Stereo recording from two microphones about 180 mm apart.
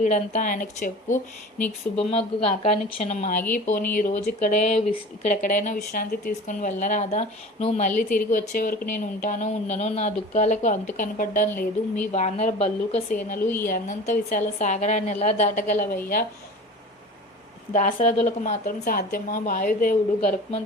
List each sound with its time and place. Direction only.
0.0 s speech: 40° left (ahead or behind)
1.1 s speech: 10° left (ahead or behind)
2.0 s a woman's voice: 35° left (ahead or behind); by 16.2 s 50° left (ahead or behind)
17.7 s speech: 40° left (ahead or behind)